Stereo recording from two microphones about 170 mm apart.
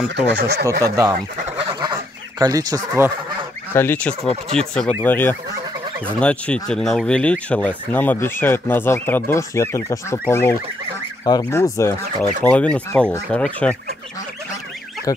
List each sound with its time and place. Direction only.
0.1 s speech: 85° right
0.7 s speech: 20° right (ahead or behind)
1.7 s fowl: 25° right (ahead or behind)
3.7 s speech: 10° left (ahead or behind)
15.1 s fowl: 20° left (ahead or behind)